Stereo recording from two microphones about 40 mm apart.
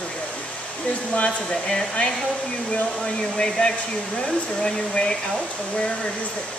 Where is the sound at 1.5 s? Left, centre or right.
Centre.